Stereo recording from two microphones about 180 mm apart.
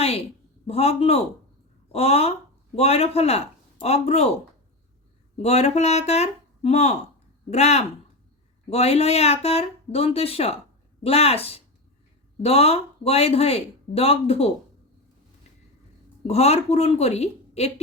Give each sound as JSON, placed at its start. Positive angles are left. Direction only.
{"t": 0.0, "sound": "a sound", "side_deg": 35}
{"t": 0.7, "sound": "speech", "side_deg": 35}
{"t": 5.4, "sound": "speech", "side_deg": 35}
{"t": 16.2, "sound": "speech", "side_deg": 35}